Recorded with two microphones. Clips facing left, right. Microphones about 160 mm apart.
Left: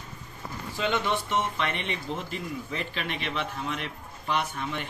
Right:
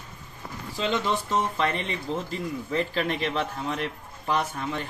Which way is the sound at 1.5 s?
35° right (ahead or behind).